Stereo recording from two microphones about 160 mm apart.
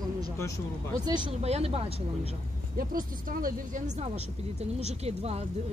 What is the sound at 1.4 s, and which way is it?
Speech, 40° right (ahead or behind).